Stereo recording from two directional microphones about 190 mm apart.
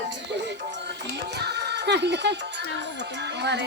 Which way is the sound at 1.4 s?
60° right (ahead or behind).